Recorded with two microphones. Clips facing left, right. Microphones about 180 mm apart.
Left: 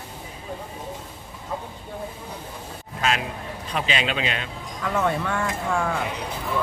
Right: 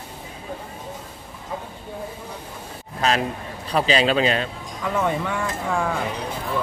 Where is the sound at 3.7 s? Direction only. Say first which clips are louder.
Right 7 dB; 35° right (ahead or behind).